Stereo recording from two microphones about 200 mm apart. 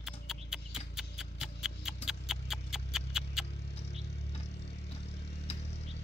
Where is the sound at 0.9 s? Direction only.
Centre (ahead or behind).